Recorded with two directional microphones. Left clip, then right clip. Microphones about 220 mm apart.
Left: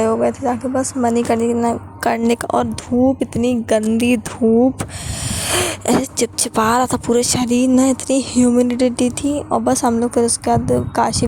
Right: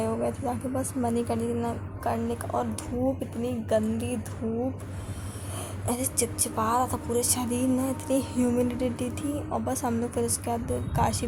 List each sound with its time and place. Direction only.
0.0 s a woman's voice: 20° left (ahead or behind)
2.0 s speech: 45° left (ahead or behind)
5.5 s speech: 45° left (ahead or behind); by 11.3 s 30° left (ahead or behind)